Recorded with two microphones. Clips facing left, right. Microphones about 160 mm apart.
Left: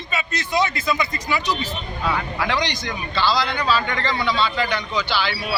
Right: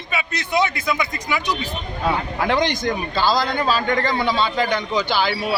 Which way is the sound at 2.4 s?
50° right (ahead or behind).